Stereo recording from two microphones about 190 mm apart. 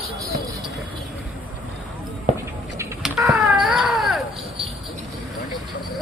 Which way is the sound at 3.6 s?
Centre (ahead or behind).